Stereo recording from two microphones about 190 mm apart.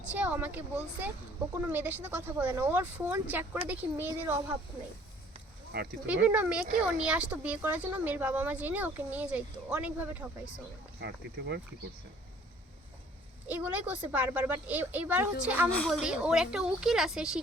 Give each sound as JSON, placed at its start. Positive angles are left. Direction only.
{"t": 0.1, "sound": "speech", "side_deg": -10}
{"t": 1.6, "sound": "speech", "side_deg": -10}
{"t": 5.7, "sound": "speech", "side_deg": -55}
{"t": 6.2, "sound": "speech", "side_deg": -5}
{"t": 11.0, "sound": "speech", "side_deg": -60}
{"t": 13.5, "sound": "speech", "side_deg": -10}
{"t": 15.7, "sound": "speech", "side_deg": 0}